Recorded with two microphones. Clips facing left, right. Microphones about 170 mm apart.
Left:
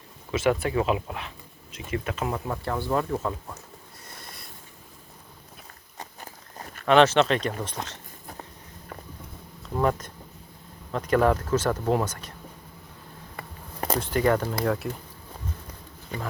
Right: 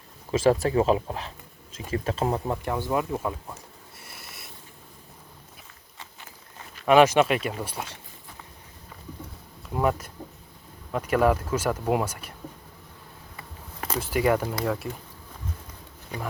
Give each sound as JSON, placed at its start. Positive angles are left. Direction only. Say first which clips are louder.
{"t": 0.3, "sound": "speech", "louder": "right 3 dB", "side_deg": -35}
{"t": 2.6, "sound": "speech", "louder": "left 2 dB", "side_deg": -15}
{"t": 4.1, "sound": "a sound", "louder": "left 2 dB", "side_deg": -5}
{"t": 6.0, "sound": "walk", "louder": "left 5 dB", "side_deg": 40}
{"t": 6.8, "sound": "speech", "louder": "right 1 dB", "side_deg": -10}
{"t": 9.6, "sound": "speech", "louder": "even", "side_deg": -10}
{"t": 14.0, "sound": "speech", "louder": "right 1 dB", "side_deg": -10}